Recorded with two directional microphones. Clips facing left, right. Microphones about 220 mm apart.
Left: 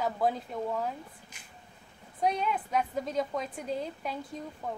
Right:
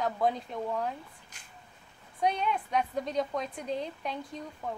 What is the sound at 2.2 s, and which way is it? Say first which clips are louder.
A woman's voice: even; centre (ahead or behind).